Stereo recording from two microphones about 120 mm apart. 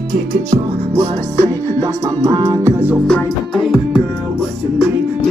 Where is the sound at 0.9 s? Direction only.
35° right (ahead or behind).